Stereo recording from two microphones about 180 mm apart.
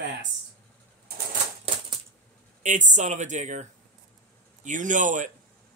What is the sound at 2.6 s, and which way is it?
Speech, 45° right (ahead or behind).